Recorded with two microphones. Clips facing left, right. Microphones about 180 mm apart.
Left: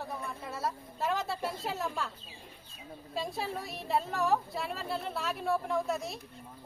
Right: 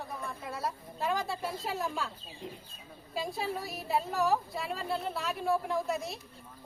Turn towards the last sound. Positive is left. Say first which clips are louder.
# even
turn(degrees=0)  # may be behind; listen again after turning